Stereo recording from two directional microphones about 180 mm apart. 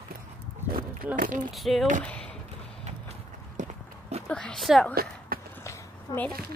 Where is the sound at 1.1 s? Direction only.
50° right (ahead or behind).